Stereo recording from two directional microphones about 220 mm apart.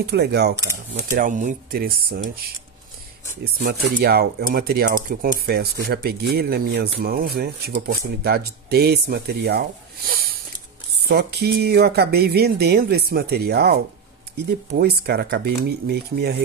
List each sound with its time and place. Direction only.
0.0 s speech: 50° right (ahead or behind)
3.9 s speech: 45° right (ahead or behind)